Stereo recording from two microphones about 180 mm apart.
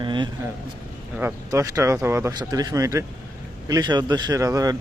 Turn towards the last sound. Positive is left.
turn(degrees=-20)  # may be behind; listen again after turning